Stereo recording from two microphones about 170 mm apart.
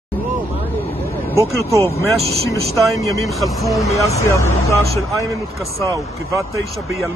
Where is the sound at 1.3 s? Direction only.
15° right (ahead or behind).